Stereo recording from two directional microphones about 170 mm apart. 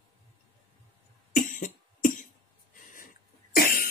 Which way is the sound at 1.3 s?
50° left (ahead or behind).